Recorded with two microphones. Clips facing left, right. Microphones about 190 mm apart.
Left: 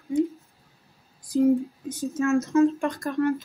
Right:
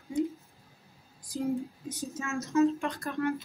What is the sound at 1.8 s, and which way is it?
Speech, 50° left (ahead or behind).